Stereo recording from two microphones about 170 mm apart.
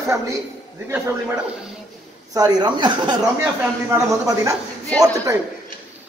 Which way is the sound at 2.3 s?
25° right (ahead or behind).